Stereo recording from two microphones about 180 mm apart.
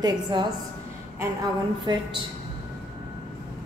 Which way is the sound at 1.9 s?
25° right (ahead or behind).